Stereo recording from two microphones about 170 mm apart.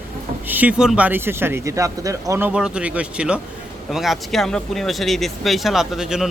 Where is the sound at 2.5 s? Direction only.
5° right (ahead or behind).